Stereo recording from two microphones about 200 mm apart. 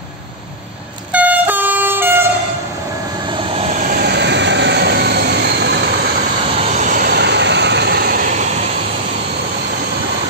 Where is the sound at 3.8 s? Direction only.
50° right (ahead or behind).